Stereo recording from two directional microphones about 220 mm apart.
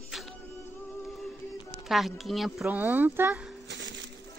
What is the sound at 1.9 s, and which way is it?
Speech, centre (ahead or behind).